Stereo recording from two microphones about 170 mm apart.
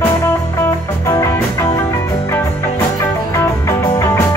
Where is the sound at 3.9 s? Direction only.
15° left (ahead or behind).